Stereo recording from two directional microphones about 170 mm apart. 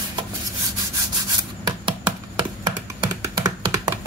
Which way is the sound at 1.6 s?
25° right (ahead or behind).